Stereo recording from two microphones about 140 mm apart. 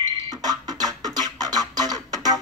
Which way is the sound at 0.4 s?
30° right (ahead or behind).